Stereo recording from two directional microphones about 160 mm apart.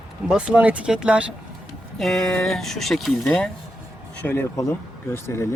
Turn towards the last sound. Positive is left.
turn(degrees=15)  # may be behind; listen again after turning